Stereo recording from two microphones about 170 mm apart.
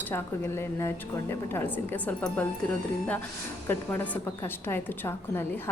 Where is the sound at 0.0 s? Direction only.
15° left (ahead or behind).